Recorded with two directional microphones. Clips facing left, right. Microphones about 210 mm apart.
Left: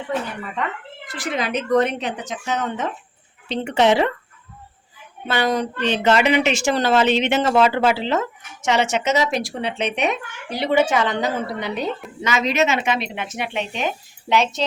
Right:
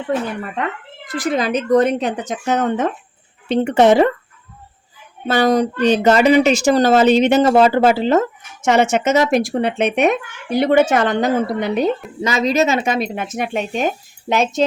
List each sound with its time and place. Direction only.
1.2 s speech: 35° right (ahead or behind)
5.3 s speech: 40° right (ahead or behind)
12.2 s speech: 35° right (ahead or behind)